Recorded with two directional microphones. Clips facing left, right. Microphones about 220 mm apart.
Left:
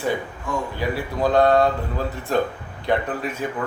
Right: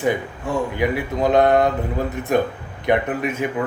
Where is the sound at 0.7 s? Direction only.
20° right (ahead or behind).